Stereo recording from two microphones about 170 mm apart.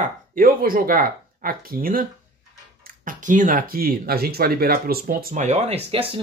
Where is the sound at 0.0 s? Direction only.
55° right (ahead or behind).